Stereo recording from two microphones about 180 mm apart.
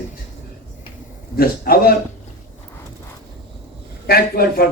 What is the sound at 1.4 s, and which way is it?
Speech, 55° left (ahead or behind).